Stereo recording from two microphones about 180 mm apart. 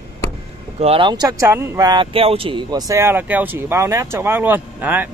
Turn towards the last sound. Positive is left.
turn(degrees=-10)  # may be behind; listen again after turning